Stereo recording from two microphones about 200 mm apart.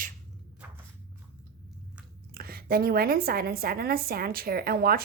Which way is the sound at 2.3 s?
50° right (ahead or behind).